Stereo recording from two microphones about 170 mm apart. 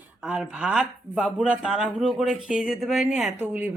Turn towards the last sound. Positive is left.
turn(degrees=-10)  # may be behind; listen again after turning